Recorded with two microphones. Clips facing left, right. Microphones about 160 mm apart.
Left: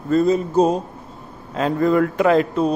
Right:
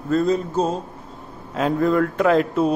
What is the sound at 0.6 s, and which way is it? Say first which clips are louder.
Speech: left 5 dB; 15° left (ahead or behind).